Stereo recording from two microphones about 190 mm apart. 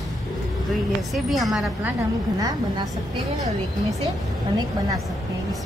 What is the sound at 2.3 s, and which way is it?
Speech, 20° right (ahead or behind).